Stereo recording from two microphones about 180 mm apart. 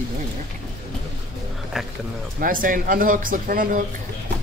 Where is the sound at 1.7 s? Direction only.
Centre (ahead or behind).